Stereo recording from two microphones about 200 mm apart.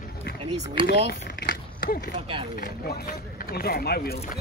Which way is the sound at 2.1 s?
30° right (ahead or behind).